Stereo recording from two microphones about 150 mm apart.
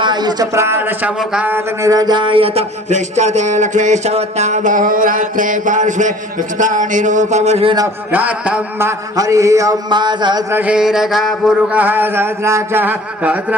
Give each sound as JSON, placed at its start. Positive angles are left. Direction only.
{"t": 0.0, "sound": "speech", "side_deg": -30}
{"t": 8.1, "sound": "mantra", "side_deg": -10}
{"t": 10.5, "sound": "mantra", "side_deg": -10}